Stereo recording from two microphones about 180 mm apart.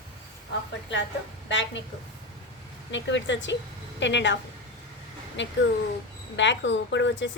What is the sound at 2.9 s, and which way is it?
Speech, 90° left.